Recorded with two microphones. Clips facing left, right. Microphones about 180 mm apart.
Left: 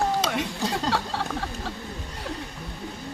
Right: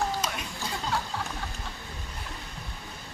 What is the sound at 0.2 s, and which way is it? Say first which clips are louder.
Speech: left 8 dB; 90° left.